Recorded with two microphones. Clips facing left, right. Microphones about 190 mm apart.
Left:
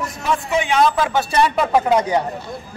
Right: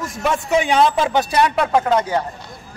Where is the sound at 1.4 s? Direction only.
Centre (ahead or behind).